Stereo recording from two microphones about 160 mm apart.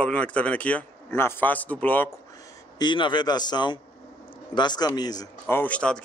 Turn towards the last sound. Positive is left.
turn(degrees=10)  # may be behind; listen again after turning